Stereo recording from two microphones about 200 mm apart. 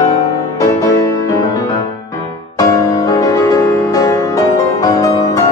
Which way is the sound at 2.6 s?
15° left (ahead or behind).